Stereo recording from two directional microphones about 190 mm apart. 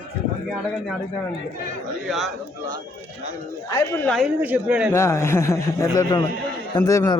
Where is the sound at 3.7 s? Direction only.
15° left (ahead or behind).